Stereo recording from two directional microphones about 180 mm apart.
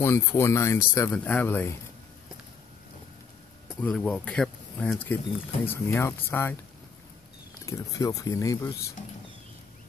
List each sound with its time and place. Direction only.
0.0 s speech: 15° left (ahead or behind)
3.8 s speech: 5° left (ahead or behind)
7.6 s speech: 15° left (ahead or behind)